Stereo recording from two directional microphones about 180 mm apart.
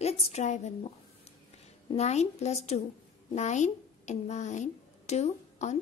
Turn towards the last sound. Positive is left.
turn(degrees=40)  # may be behind; listen again after turning